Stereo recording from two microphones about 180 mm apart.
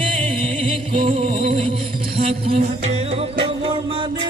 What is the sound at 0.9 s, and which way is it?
Music, 30° right (ahead or behind).